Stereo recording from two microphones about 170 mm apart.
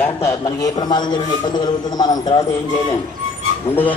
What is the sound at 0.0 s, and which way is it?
A man's voice, 15° left (ahead or behind).